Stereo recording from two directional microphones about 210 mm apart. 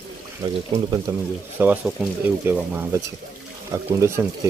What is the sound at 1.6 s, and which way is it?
Speech, 5° right (ahead or behind).